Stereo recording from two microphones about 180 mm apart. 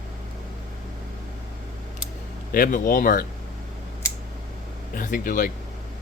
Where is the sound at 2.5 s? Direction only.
50° left (ahead or behind).